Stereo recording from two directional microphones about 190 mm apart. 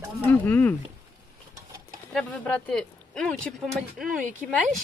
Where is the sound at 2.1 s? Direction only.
5° left (ahead or behind).